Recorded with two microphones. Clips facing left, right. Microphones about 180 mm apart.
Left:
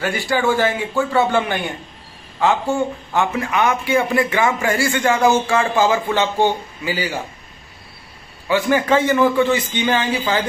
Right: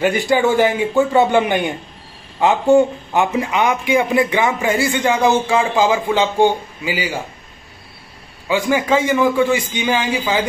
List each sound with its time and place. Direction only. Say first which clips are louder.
0.0 s a man's voice: right 4 dB; 20° right (ahead or behind)
8.5 s a man's voice: even; 15° right (ahead or behind)